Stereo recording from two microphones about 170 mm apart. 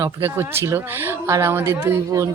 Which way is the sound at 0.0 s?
15° right (ahead or behind).